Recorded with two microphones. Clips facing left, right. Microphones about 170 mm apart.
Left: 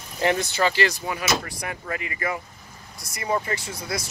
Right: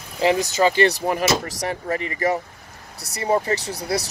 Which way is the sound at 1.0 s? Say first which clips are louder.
Right 7 dB; 45° right (ahead or behind).